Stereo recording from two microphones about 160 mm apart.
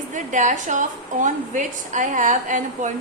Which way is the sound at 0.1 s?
50° right (ahead or behind).